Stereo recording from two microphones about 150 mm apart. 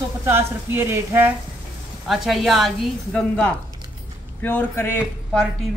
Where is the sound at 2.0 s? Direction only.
Centre (ahead or behind); by 5.4 s 15° left (ahead or behind).